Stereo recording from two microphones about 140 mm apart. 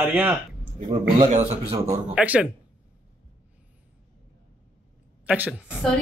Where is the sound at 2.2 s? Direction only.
5° right (ahead or behind).